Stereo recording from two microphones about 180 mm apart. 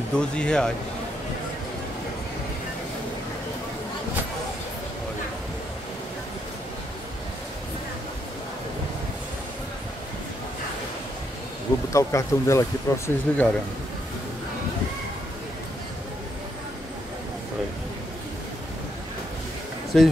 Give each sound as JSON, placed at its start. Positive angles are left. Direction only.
{"t": 0.2, "sound": "speech", "side_deg": 5}
{"t": 11.9, "sound": "speech", "side_deg": 15}
{"t": 19.9, "sound": "speech", "side_deg": 5}